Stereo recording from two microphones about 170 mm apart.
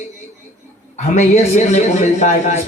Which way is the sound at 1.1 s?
45° left (ahead or behind).